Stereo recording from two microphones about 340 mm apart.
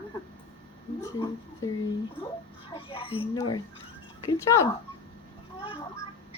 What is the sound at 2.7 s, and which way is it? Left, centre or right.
A woman's voice, centre.